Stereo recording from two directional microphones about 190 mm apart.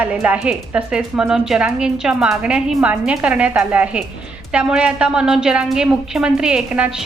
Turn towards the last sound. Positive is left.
turn(degrees=-5)  # may be behind; listen again after turning